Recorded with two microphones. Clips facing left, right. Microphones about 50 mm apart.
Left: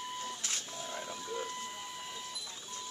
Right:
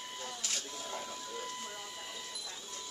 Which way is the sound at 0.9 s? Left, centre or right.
Centre.